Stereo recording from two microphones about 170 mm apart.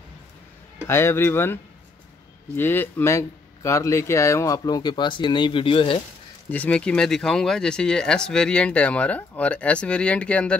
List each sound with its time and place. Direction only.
0.8 s speech: 15° left (ahead or behind); by 5.9 s 30° left (ahead or behind)
6.5 s speech: 10° left (ahead or behind)